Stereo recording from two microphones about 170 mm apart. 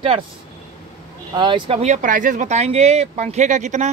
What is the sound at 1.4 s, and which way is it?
Speech, 30° right (ahead or behind).